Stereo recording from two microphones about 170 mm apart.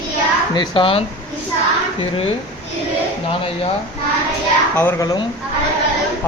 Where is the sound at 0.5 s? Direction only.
30° left (ahead or behind).